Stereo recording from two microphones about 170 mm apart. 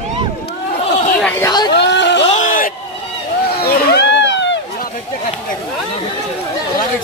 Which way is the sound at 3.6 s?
75° left (ahead or behind).